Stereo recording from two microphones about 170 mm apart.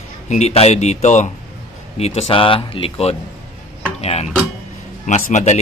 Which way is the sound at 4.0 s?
35° left (ahead or behind).